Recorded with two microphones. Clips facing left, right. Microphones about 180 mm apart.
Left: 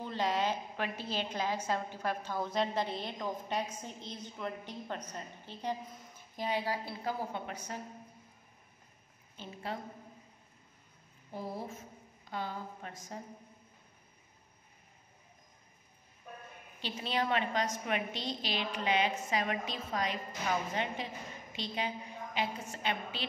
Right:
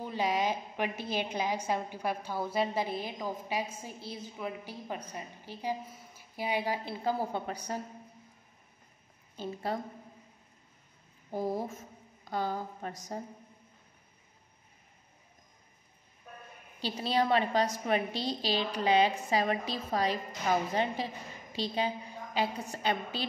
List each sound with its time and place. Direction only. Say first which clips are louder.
0.0 s a woman's voice: right 2 dB; 10° right (ahead or behind); by 7.8 s 35° right (ahead or behind)
9.4 s a woman's voice: right 6 dB; 40° right (ahead or behind)
11.3 s a woman's voice: right 7 dB; 45° right (ahead or behind)
16.8 s a woman's voice: right 5 dB; 35° right (ahead or behind)